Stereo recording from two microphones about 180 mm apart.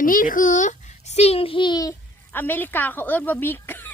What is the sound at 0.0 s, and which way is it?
A child's voice, 50° left (ahead or behind).